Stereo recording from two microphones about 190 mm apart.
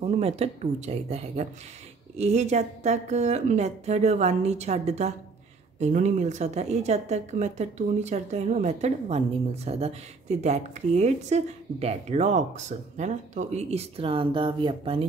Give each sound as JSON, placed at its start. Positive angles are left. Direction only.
{"t": 0.0, "sound": "a woman's voice", "side_deg": -35}